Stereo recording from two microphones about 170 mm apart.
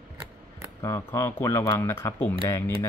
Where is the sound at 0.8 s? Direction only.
15° left (ahead or behind).